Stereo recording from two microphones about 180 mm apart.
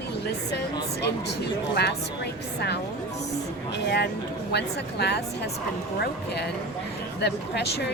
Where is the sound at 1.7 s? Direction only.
65° left (ahead or behind).